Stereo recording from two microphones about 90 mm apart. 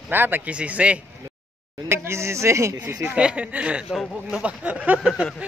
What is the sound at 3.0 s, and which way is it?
Speech, 10° right (ahead or behind).